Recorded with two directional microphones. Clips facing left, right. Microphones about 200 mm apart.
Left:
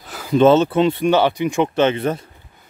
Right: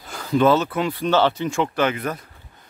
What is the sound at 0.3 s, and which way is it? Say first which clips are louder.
Speech: left 5 dB; 25° left (ahead or behind).